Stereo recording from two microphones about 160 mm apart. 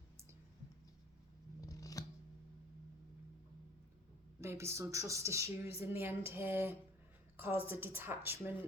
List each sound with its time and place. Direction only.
1.6 s scissors: 20° left (ahead or behind)
4.4 s a woman's voice: 15° right (ahead or behind)